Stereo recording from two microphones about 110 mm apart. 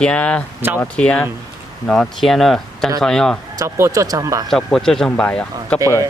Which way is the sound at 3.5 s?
30° right (ahead or behind).